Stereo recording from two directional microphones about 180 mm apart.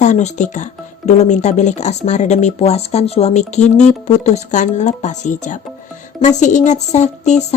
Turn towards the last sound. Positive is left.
turn(degrees=40)  # may be behind; listen again after turning